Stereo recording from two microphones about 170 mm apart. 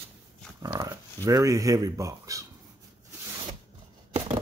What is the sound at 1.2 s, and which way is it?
Speech, 20° right (ahead or behind).